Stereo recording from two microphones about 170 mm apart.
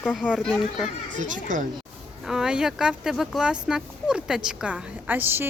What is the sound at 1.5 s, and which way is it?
Speech, 50° right (ahead or behind).